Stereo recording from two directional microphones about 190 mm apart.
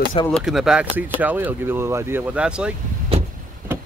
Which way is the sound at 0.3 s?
Centre (ahead or behind).